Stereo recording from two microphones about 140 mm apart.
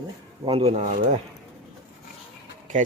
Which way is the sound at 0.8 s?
65° right (ahead or behind).